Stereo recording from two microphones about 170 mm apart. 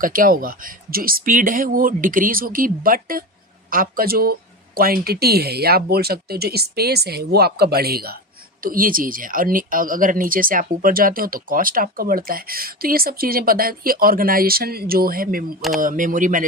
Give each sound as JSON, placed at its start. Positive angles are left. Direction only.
{"t": 0.0, "sound": "speech", "side_deg": -55}